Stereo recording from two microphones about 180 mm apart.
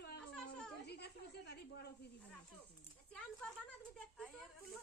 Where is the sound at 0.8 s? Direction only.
65° left (ahead or behind).